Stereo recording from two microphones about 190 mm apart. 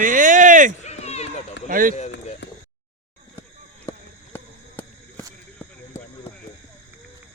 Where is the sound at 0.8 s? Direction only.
35° left (ahead or behind).